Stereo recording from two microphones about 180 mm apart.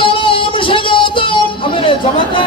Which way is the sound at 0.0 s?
30° left (ahead or behind).